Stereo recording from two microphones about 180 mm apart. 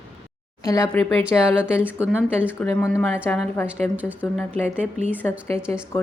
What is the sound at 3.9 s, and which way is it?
Speech, 10° right (ahead or behind).